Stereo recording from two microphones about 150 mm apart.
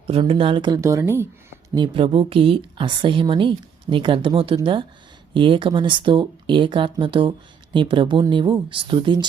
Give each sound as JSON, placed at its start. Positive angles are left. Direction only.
{"t": 0.1, "sound": "speech", "side_deg": -40}
{"t": 1.7, "sound": "speech", "side_deg": -30}